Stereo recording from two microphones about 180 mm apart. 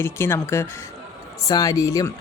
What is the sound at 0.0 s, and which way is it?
Speech, 15° left (ahead or behind).